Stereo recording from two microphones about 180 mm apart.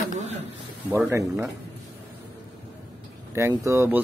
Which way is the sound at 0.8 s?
10° right (ahead or behind).